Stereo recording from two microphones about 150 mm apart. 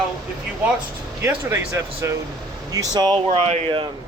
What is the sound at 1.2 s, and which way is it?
Speech, 20° right (ahead or behind).